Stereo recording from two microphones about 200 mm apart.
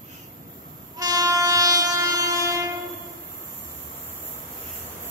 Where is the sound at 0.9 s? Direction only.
20° right (ahead or behind).